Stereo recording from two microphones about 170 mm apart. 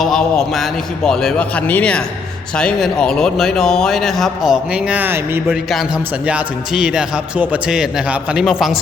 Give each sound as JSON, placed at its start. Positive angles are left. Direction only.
{"t": 0.0, "sound": "speech", "side_deg": 0}